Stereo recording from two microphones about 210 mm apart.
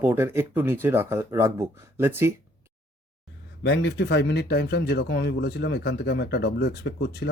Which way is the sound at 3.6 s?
55° left (ahead or behind).